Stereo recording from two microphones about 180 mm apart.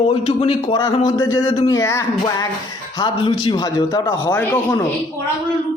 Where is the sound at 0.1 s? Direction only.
30° left (ahead or behind).